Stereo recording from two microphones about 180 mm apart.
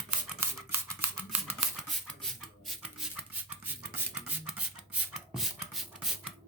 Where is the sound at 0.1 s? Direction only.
15° right (ahead or behind).